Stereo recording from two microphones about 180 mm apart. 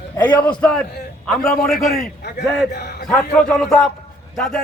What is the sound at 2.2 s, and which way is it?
Speech, 60° left (ahead or behind).